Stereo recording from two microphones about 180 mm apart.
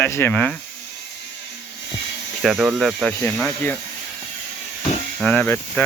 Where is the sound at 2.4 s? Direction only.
Centre (ahead or behind).